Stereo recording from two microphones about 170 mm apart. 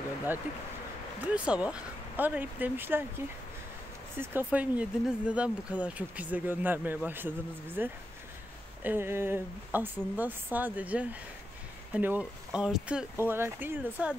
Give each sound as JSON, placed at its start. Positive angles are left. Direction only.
{"t": 1.2, "sound": "speech", "side_deg": -5}
{"t": 4.2, "sound": "speech", "side_deg": -15}